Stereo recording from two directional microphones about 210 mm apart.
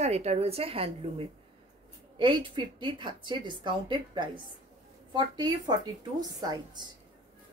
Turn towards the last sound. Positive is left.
turn(degrees=-20)  # may be behind; listen again after turning